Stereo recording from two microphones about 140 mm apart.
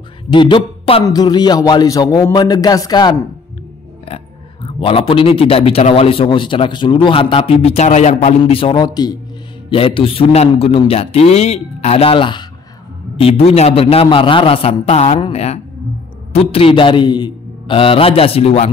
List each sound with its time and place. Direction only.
0.3 s a man's voice: 35° left (ahead or behind)
4.6 s a man's voice: 40° left (ahead or behind)
8.5 s a man's voice: 35° left (ahead or behind)
9.7 s a man's voice: 40° left (ahead or behind)